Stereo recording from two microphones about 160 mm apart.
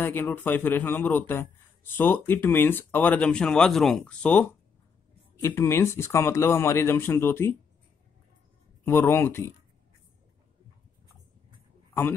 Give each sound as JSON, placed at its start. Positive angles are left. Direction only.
{"t": 0.0, "sound": "speech", "side_deg": 15}
{"t": 8.8, "sound": "speech", "side_deg": 15}
{"t": 11.9, "sound": "a man's voice", "side_deg": 15}